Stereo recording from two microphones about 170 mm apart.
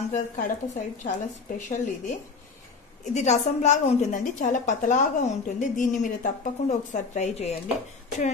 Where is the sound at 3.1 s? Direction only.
45° left (ahead or behind).